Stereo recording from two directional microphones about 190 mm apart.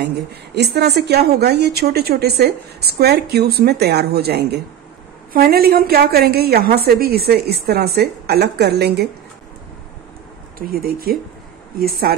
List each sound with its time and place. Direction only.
0.7 s a woman's voice: 60° right (ahead or behind)
10.7 s speech: 50° right (ahead or behind)